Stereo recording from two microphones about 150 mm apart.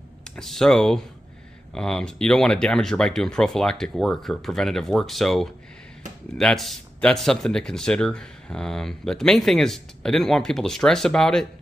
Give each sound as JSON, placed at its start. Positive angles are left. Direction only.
{"t": 0.2, "sound": "a man's voice", "side_deg": 5}